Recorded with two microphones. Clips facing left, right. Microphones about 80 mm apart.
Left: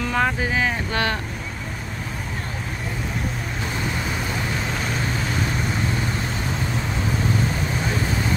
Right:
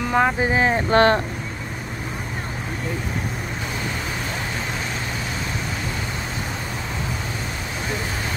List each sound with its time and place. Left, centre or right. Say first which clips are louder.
0.0 s boat: right 3 dB; centre
0.4 s speech: right 4 dB; right